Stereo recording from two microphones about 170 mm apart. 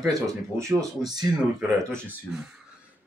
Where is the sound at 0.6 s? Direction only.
20° right (ahead or behind).